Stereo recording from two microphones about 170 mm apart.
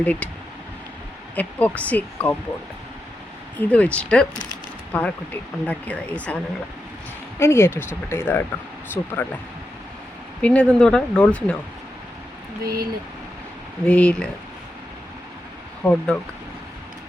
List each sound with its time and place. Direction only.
0.0 s speech: 10° left (ahead or behind)
1.4 s speech: 10° left (ahead or behind)
3.6 s speech: 10° left (ahead or behind)
10.4 s speech: 5° left (ahead or behind)
12.6 s speech: 65° right (ahead or behind)
13.8 s speech: 5° left (ahead or behind)
15.8 s speech: 5° left (ahead or behind)